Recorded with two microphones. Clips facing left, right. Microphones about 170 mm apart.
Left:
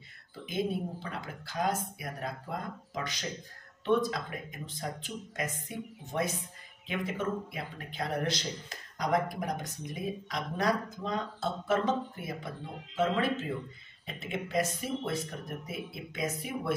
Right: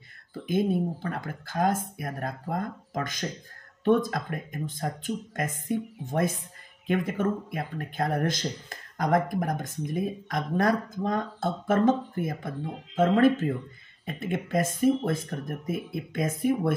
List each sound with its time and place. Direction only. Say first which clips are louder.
1.0 s speech: right 6 dB; 50° right (ahead or behind)